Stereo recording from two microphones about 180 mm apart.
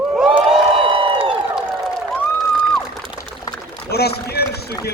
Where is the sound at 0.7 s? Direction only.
30° right (ahead or behind).